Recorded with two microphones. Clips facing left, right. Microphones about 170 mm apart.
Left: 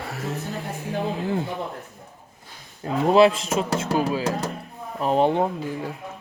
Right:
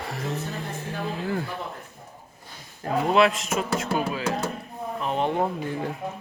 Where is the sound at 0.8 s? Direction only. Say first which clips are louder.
Left 5 dB; 15° left (ahead or behind).